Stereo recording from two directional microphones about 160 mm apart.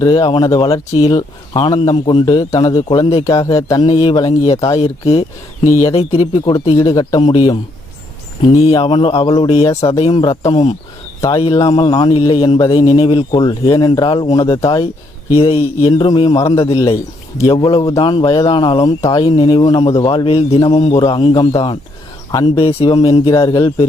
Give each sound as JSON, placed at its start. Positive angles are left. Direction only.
{"t": 0.0, "sound": "a man's voice", "side_deg": 25}
{"t": 3.8, "sound": "a man's voice", "side_deg": 35}
{"t": 4.8, "sound": "speech", "side_deg": 40}
{"t": 5.6, "sound": "a man's voice", "side_deg": 20}
{"t": 5.9, "sound": "a man's voice", "side_deg": 40}
{"t": 22.6, "sound": "a man's voice", "side_deg": 35}